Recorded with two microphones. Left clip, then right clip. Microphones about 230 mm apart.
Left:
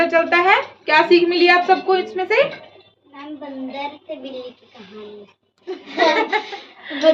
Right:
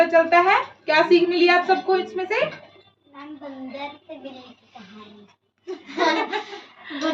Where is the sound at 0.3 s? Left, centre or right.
Centre.